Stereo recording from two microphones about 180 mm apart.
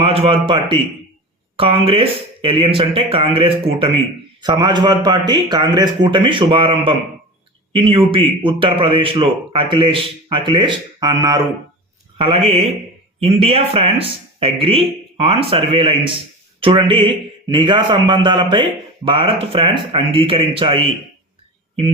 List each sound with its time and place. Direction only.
0.0 s a man's voice: 30° right (ahead or behind)
12.1 s a man's voice: 30° right (ahead or behind)